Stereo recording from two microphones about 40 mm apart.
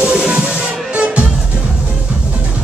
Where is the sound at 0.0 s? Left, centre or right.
Right.